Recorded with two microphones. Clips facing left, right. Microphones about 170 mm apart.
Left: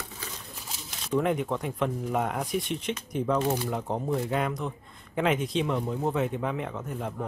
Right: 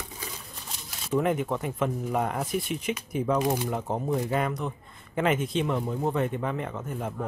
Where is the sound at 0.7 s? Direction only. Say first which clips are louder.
Right 1 dB; 5° right (ahead or behind).